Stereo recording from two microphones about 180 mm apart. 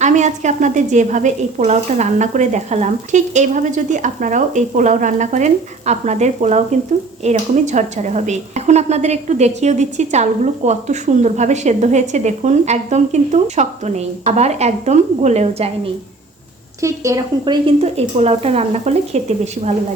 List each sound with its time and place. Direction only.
0.0 s a woman's voice: 40° right (ahead or behind)
16.8 s a woman's voice: 15° right (ahead or behind); by 19.2 s 35° right (ahead or behind)